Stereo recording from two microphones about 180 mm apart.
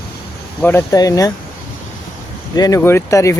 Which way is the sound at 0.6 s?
15° left (ahead or behind).